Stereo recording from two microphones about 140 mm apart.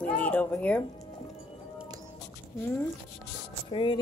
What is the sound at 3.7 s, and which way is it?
Speech, 35° left (ahead or behind).